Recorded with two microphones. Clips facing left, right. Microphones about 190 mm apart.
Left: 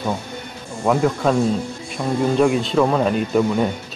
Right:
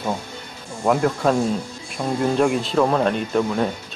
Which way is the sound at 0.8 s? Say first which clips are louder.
Left 1 dB; centre (ahead or behind).